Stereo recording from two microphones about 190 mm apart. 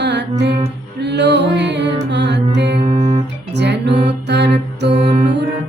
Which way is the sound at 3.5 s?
65° right (ahead or behind).